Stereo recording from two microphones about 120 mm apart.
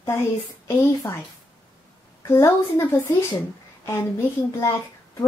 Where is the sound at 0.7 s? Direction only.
25° left (ahead or behind).